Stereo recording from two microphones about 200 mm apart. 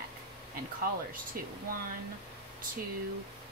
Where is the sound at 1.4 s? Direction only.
45° right (ahead or behind).